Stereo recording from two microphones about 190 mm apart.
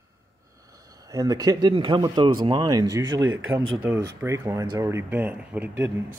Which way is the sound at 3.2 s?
90° right.